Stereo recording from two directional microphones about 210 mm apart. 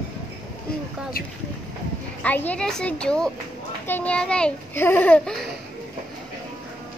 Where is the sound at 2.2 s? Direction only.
5° left (ahead or behind).